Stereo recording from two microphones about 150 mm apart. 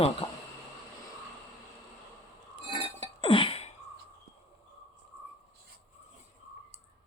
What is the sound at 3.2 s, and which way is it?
Sneeze, 35° left (ahead or behind).